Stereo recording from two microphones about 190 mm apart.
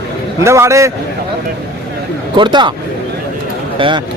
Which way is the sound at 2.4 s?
25° right (ahead or behind).